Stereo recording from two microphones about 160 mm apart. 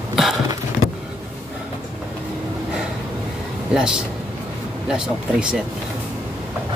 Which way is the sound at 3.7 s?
5° right (ahead or behind).